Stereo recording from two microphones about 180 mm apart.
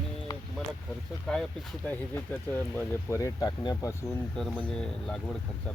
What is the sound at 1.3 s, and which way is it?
Speech, centre (ahead or behind).